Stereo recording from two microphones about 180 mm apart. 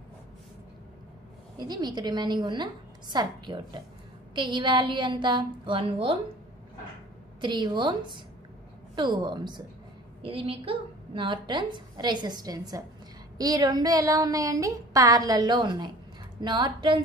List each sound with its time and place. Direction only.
1.6 s a woman's voice: 25° right (ahead or behind)
7.3 s a woman's voice: 25° right (ahead or behind)